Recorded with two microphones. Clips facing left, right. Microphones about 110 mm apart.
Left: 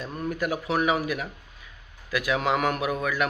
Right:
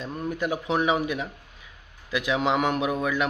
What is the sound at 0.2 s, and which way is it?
Speech, 20° right (ahead or behind).